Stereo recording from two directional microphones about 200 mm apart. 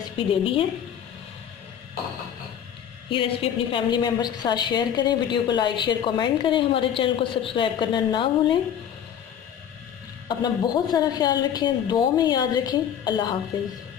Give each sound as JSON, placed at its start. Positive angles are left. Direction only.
{"t": 0.3, "sound": "a woman's voice", "side_deg": 25}
{"t": 3.1, "sound": "a woman's voice", "side_deg": 25}
{"t": 10.2, "sound": "a woman's voice", "side_deg": 20}